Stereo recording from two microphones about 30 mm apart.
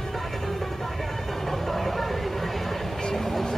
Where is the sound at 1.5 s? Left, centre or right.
Centre.